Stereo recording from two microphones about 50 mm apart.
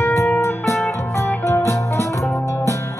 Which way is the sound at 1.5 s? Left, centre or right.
Left.